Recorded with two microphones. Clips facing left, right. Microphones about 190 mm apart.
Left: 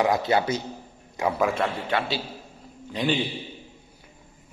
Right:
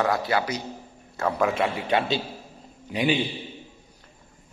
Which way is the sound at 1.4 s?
5° right (ahead or behind).